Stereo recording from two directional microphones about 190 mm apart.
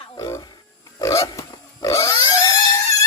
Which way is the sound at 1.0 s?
15° left (ahead or behind).